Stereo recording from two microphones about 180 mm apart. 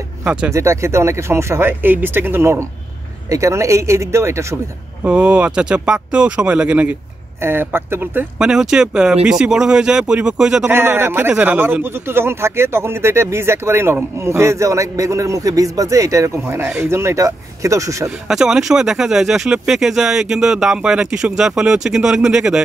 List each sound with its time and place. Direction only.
0.2 s speech: 5° right (ahead or behind)
18.3 s speech: centre (ahead or behind)